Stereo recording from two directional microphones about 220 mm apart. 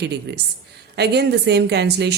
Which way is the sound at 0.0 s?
50° right (ahead or behind).